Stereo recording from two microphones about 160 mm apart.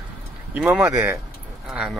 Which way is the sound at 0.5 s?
10° right (ahead or behind).